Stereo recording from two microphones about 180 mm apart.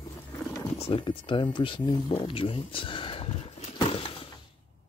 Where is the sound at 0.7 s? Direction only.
30° left (ahead or behind).